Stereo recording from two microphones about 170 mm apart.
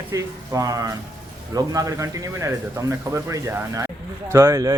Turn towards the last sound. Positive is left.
turn(degrees=-20)  # may be behind; listen again after turning